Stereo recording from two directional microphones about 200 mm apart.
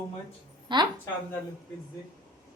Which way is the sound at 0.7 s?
20° right (ahead or behind).